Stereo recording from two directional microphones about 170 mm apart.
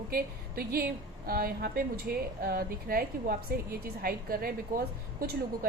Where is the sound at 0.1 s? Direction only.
60° right (ahead or behind).